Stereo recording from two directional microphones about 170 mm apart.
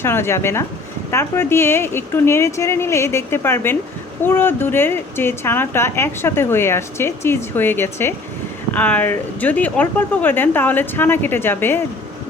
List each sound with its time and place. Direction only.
0.0 s speech: 15° left (ahead or behind)